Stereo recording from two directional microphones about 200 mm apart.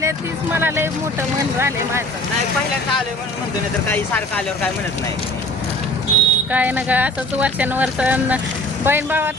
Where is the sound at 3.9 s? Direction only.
5° left (ahead or behind).